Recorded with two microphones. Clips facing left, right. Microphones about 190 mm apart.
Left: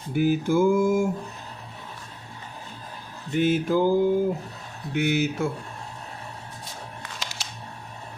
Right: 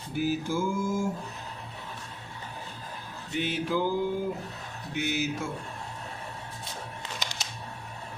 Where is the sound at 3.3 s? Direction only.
45° left (ahead or behind).